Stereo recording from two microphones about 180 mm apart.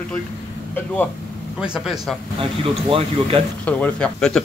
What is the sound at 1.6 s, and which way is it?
Speech, 5° right (ahead or behind).